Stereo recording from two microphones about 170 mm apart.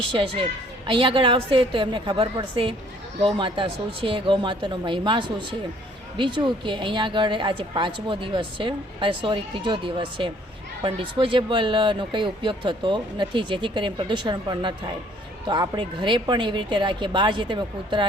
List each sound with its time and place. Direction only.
0.1 s a woman's voice: 30° right (ahead or behind)